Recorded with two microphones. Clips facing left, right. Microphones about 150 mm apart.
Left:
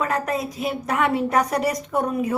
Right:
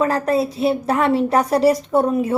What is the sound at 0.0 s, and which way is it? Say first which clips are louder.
A woman's voice: right 6 dB; 30° right (ahead or behind).